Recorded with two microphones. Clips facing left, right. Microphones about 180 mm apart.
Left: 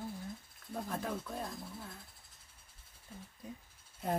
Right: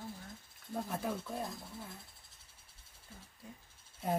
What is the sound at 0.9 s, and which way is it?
Speech, 5° right (ahead or behind).